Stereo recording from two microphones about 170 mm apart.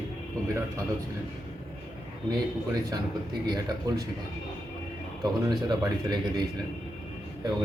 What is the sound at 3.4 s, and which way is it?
Speech, 25° right (ahead or behind).